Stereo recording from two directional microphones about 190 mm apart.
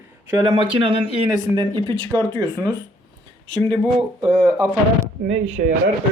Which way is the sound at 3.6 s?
5° left (ahead or behind).